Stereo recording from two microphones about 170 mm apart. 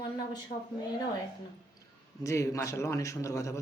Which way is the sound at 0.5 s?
45° left (ahead or behind).